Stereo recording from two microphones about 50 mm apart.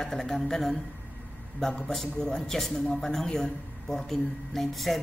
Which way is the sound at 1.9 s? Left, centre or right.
Centre.